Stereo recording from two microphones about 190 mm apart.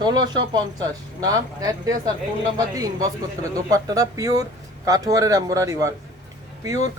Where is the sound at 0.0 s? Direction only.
25° right (ahead or behind).